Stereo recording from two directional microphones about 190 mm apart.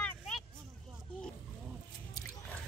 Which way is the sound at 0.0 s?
5° left (ahead or behind).